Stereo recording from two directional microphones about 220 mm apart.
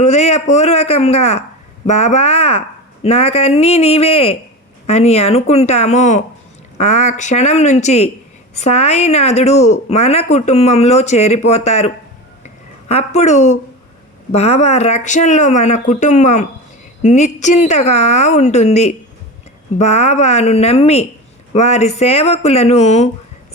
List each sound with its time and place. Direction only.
0.0 s a woman's voice: 30° left (ahead or behind)
12.9 s a woman's voice: 30° left (ahead or behind)